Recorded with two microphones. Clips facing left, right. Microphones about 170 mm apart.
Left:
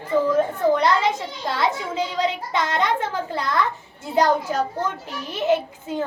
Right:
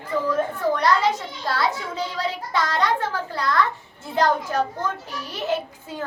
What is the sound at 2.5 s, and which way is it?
A child's voice, 20° left (ahead or behind).